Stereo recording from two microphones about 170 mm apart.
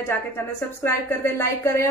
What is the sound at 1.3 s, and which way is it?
Speech, 15° left (ahead or behind).